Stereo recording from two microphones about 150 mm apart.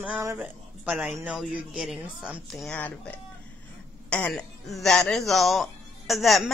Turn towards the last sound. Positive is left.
turn(degrees=0)  # may be behind; listen again after turning